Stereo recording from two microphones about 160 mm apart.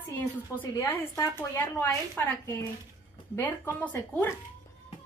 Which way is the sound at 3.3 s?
15° left (ahead or behind).